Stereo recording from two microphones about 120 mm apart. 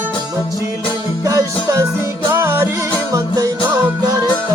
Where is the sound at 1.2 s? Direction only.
25° right (ahead or behind).